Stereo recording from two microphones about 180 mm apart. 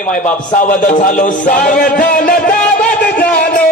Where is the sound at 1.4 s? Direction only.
50° left (ahead or behind).